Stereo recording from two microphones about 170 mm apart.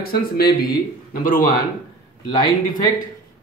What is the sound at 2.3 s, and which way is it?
Speech, 25° left (ahead or behind).